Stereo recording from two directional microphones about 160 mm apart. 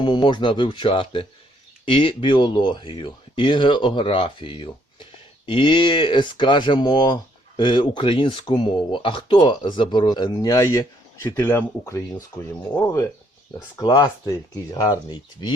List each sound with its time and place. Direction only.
0.0 s speech: 30° left (ahead or behind)